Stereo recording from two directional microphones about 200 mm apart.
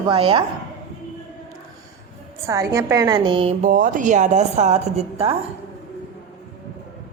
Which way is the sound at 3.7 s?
40° right (ahead or behind).